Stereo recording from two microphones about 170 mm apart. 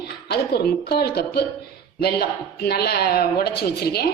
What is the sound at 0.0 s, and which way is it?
A woman's voice, 70° left (ahead or behind).